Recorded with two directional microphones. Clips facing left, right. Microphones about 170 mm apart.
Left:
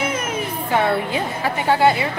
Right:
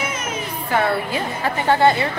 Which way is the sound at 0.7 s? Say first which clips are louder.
Left 1 dB; 20° left (ahead or behind).